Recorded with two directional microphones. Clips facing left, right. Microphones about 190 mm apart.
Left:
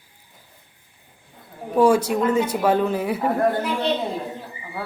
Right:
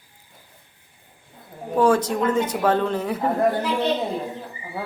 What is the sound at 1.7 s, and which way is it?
A woman's voice, 10° left (ahead or behind).